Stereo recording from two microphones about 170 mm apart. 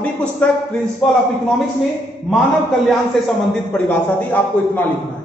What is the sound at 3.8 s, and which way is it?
A man's voice, 10° left (ahead or behind).